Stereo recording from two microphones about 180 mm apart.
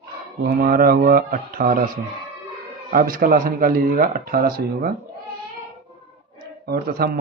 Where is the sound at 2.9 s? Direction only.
50° right (ahead or behind).